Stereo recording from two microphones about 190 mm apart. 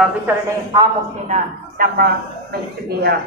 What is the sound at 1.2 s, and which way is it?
Speech, 45° right (ahead or behind).